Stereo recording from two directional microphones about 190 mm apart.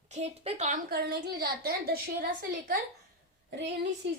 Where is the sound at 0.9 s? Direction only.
55° right (ahead or behind).